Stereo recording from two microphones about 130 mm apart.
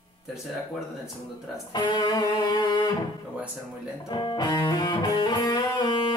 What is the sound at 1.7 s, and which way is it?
Music, 30° left (ahead or behind).